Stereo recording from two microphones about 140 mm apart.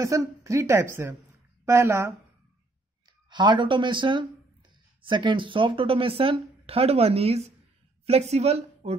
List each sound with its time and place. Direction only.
0.0 s a woman's voice: 20° right (ahead or behind)
3.3 s a woman's voice: 35° right (ahead or behind); by 8.9 s 50° right (ahead or behind)